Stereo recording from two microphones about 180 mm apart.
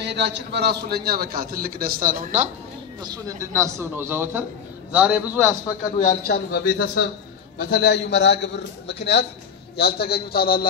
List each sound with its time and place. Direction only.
0.0 s a man's voice: 70° right (ahead or behind); by 2.5 s 45° right (ahead or behind)
3.0 s a man's voice: 20° right (ahead or behind)
6.0 s a man's voice: 60° left (ahead or behind)
9.8 s a man's voice: 60° left (ahead or behind)